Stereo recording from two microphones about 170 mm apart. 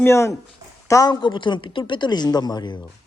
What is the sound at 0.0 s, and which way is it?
A woman's voice, 15° left (ahead or behind).